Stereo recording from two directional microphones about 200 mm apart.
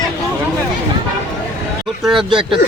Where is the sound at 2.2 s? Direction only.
25° right (ahead or behind).